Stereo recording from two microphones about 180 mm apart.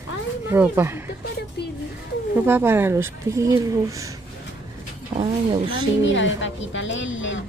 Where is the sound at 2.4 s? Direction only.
10° right (ahead or behind).